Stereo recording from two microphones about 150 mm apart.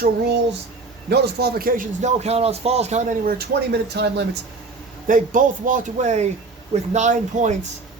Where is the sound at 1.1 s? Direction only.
90° right.